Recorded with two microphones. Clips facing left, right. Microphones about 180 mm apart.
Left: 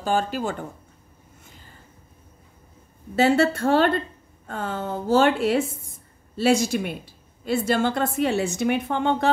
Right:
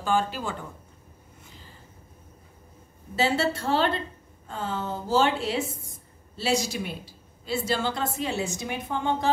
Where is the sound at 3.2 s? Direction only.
50° left (ahead or behind).